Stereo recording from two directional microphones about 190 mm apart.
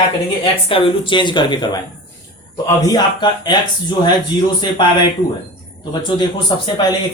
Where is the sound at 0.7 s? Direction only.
25° left (ahead or behind).